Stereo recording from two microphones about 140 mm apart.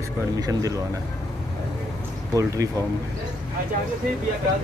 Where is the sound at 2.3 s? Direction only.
25° right (ahead or behind).